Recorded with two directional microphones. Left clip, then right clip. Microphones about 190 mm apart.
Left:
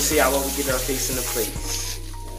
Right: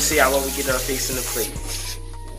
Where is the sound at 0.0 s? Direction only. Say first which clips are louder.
Right 2 dB; 5° right (ahead or behind).